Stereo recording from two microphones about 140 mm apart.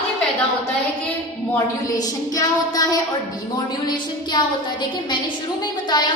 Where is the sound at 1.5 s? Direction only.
25° left (ahead or behind).